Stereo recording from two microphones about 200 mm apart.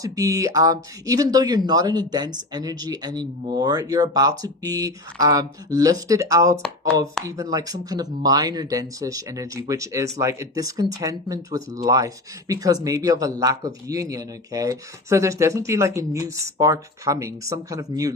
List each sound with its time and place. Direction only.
0.0 s speech: 15° right (ahead or behind)